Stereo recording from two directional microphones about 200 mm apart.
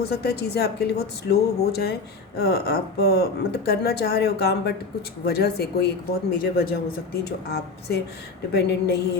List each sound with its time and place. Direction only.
0.0 s a woman's voice: 50° left (ahead or behind)